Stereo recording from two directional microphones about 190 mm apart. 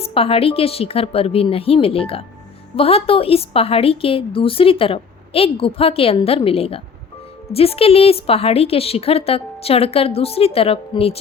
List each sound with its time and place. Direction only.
0.0 s a woman's voice: 30° left (ahead or behind)